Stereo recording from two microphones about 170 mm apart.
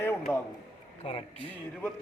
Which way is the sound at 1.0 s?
35° left (ahead or behind).